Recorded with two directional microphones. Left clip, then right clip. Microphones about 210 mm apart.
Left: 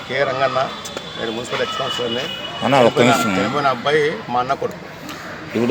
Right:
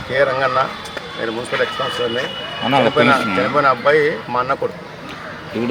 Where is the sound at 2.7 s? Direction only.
40° left (ahead or behind).